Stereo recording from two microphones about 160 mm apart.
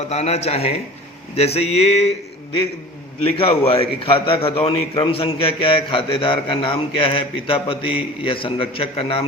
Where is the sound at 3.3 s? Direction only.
35° left (ahead or behind).